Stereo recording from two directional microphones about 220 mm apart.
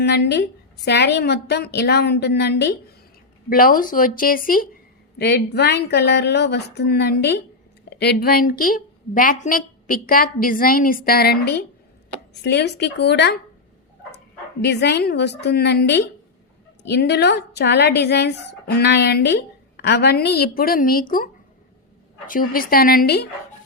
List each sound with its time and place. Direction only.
0.0 s a woman's voice: 50° left (ahead or behind)
14.6 s a woman's voice: 50° left (ahead or behind)
22.3 s a woman's voice: 40° left (ahead or behind)